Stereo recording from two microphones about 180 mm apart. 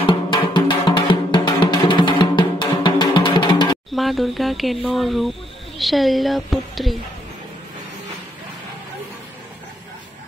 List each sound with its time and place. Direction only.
0.0 s music: 25° left (ahead or behind)
3.9 s speech: centre (ahead or behind)